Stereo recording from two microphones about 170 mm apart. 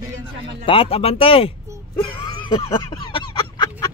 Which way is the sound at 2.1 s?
25° left (ahead or behind).